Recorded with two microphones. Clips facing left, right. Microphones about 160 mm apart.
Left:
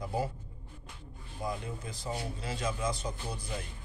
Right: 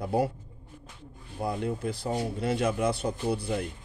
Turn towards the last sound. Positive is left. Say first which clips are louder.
# right 10 dB
turn(degrees=-65)  # may be behind; listen again after turning